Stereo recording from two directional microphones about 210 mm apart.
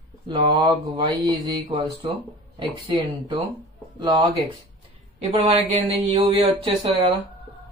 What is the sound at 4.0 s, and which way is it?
Speech, 15° right (ahead or behind).